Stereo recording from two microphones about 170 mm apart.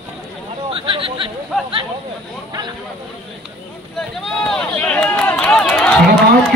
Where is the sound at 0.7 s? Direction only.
30° right (ahead or behind).